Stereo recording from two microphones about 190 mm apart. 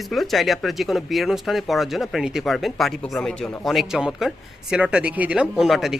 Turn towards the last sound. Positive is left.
turn(degrees=0)  # may be behind; listen again after turning